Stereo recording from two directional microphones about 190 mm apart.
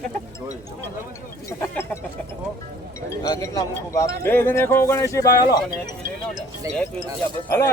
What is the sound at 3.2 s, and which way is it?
Speech, 20° left (ahead or behind).